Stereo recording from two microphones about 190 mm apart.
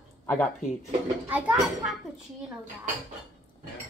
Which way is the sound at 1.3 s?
5° right (ahead or behind).